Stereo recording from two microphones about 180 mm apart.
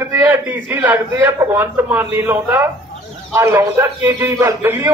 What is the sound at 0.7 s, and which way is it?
A man's voice, 10° right (ahead or behind).